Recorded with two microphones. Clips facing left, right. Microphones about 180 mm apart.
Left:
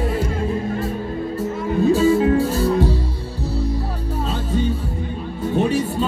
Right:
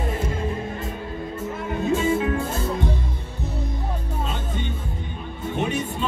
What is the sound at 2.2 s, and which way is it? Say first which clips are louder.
Music: left 8 dB; 35° left (ahead or behind).